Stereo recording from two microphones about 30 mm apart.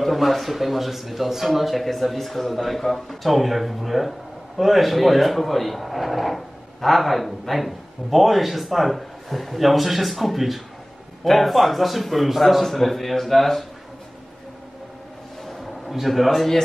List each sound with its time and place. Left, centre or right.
0.0 s speech: centre
12.6 s a man's voice: centre
15.6 s a sound: centre